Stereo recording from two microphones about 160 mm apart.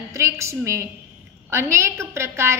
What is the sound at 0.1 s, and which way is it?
A woman's voice, 20° right (ahead or behind).